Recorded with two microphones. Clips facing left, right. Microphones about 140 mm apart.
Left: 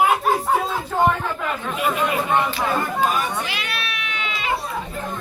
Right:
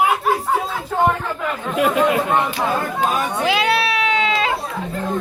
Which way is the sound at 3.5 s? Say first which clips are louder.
Right 12 dB; 90° right.